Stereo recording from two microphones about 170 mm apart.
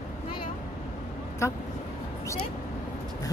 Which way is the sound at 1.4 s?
15° left (ahead or behind).